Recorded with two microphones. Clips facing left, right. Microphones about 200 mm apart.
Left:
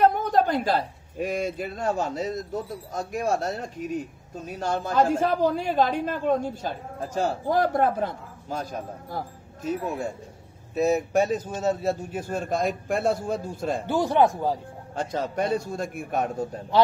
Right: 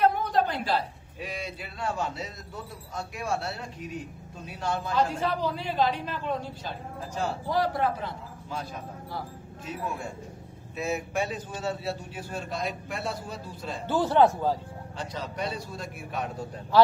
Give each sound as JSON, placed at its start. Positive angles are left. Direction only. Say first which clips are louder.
{"t": 0.0, "sound": "speech", "louder": "left 4 dB", "side_deg": 45}
{"t": 13.8, "sound": "speech", "louder": "even", "side_deg": 15}
{"t": 15.0, "sound": "speech", "louder": "left 7 dB", "side_deg": 50}